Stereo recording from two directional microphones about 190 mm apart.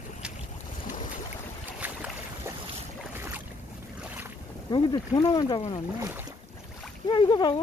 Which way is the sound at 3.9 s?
10° right (ahead or behind).